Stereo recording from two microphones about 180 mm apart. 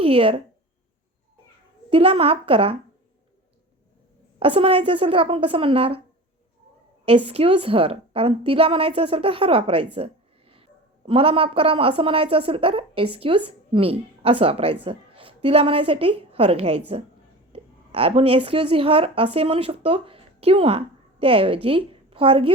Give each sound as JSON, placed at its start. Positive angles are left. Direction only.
{"t": 0.0, "sound": "speech", "side_deg": -30}
{"t": 1.9, "sound": "a woman's voice", "side_deg": -30}
{"t": 4.4, "sound": "a woman's voice", "side_deg": -30}
{"t": 7.3, "sound": "a woman's voice", "side_deg": -30}